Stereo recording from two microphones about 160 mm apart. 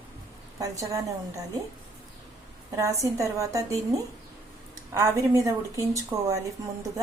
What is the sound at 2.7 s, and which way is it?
A woman's voice, 20° right (ahead or behind).